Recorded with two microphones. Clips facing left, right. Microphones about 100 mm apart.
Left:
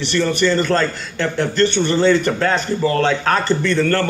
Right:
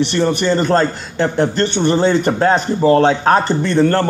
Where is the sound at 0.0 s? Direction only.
15° right (ahead or behind).